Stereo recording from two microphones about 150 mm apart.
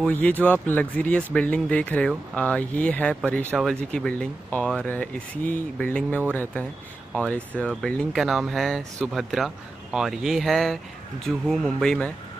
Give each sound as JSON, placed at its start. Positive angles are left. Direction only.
{"t": 0.0, "sound": "speech", "side_deg": 10}
{"t": 7.5, "sound": "speech", "side_deg": 5}